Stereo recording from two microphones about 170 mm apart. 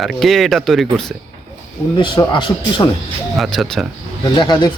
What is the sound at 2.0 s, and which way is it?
Speech, 30° left (ahead or behind).